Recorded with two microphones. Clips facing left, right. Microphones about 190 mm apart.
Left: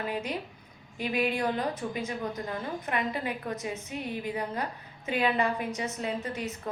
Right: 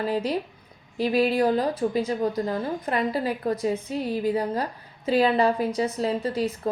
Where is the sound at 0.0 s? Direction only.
35° right (ahead or behind).